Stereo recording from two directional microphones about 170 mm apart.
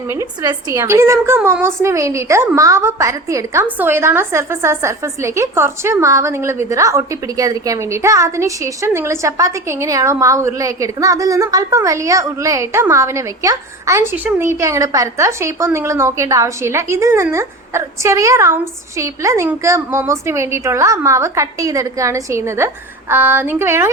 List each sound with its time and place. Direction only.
0.1 s a woman's voice: 20° right (ahead or behind)
1.4 s a woman's voice: 5° right (ahead or behind)
1.6 s a woman's voice: 15° right (ahead or behind)